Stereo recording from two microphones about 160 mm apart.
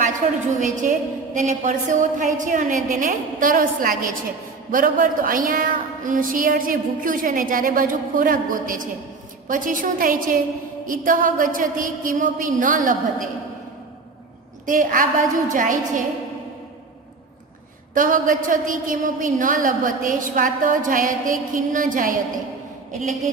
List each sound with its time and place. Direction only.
0.0 s a woman's voice: 50° right (ahead or behind)
14.7 s a woman's voice: 55° right (ahead or behind)
17.9 s a woman's voice: 55° right (ahead or behind)